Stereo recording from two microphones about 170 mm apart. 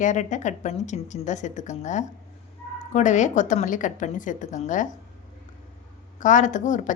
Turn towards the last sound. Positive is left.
turn(degrees=50)  # may be behind; listen again after turning